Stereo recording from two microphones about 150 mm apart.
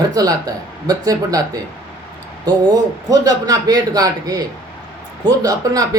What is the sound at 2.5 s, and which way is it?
Speech, 25° right (ahead or behind).